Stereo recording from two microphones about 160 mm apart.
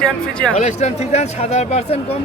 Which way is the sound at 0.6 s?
45° left (ahead or behind).